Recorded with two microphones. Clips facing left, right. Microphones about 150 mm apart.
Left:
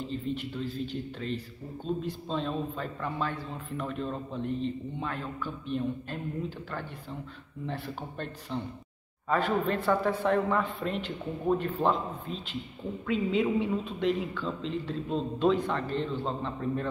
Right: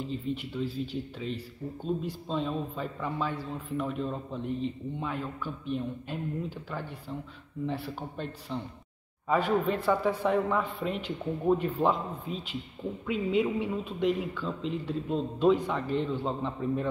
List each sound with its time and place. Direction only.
0.1 s a man's voice: 5° right (ahead or behind)
7.6 s a man's voice: 5° right (ahead or behind)